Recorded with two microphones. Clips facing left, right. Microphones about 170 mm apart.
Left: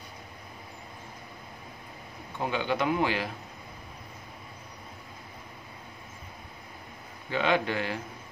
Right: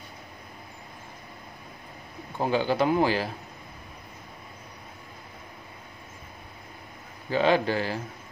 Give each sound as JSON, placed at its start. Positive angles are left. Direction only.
{"t": 2.3, "sound": "a man's voice", "side_deg": -35}
{"t": 7.2, "sound": "a man's voice", "side_deg": -35}